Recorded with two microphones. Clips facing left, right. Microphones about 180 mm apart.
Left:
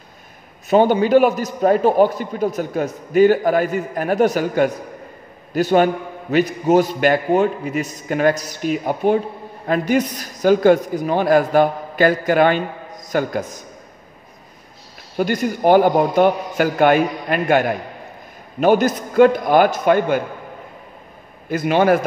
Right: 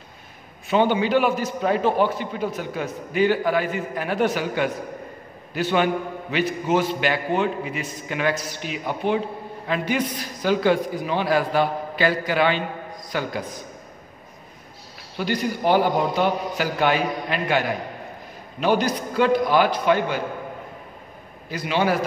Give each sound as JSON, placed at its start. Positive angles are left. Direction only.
{"t": 0.7, "sound": "a man's voice", "side_deg": 45}
{"t": 15.1, "sound": "a man's voice", "side_deg": 50}
{"t": 21.5, "sound": "a man's voice", "side_deg": 50}